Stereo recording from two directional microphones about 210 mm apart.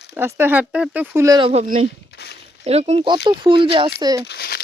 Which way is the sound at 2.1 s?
50° left (ahead or behind).